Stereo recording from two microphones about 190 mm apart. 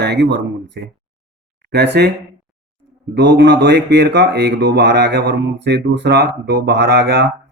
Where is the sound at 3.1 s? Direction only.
65° right (ahead or behind).